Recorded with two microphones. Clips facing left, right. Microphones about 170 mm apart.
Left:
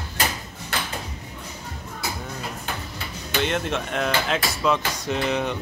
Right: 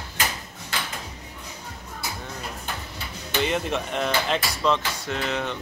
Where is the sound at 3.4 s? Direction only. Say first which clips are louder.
Even; centre (ahead or behind).